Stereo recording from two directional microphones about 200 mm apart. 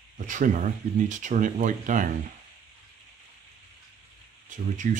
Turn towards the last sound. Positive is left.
turn(degrees=-35)  # may be behind; listen again after turning